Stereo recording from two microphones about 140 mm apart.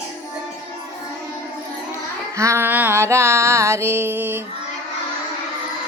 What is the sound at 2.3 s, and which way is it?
Female singing, 20° right (ahead or behind).